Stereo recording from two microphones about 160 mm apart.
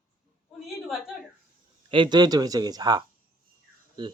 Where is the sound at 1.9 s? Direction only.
30° right (ahead or behind).